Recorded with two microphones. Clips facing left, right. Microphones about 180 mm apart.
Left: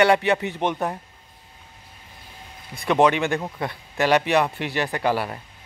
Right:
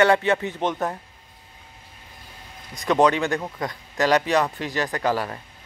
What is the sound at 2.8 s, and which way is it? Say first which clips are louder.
Speech: even; 20° left (ahead or behind).